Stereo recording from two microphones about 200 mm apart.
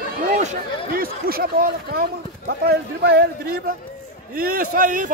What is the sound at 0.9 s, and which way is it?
A man's voice, 45° right (ahead or behind).